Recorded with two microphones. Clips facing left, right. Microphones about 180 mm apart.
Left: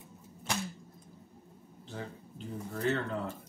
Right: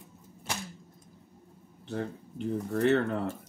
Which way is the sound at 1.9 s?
65° right (ahead or behind).